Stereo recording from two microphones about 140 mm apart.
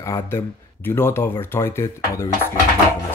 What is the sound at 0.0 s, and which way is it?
Speech, 20° left (ahead or behind).